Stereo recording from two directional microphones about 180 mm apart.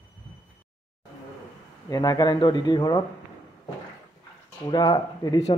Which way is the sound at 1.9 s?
20° left (ahead or behind).